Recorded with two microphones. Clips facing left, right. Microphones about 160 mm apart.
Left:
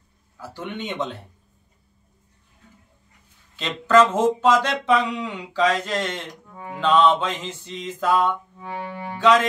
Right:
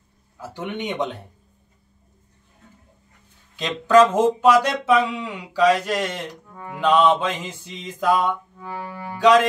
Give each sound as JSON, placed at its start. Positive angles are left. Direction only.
{"t": 0.4, "sound": "speech", "side_deg": -20}
{"t": 3.5, "sound": "speech", "side_deg": -15}
{"t": 6.5, "sound": "music", "side_deg": 15}
{"t": 6.8, "sound": "speech", "side_deg": -10}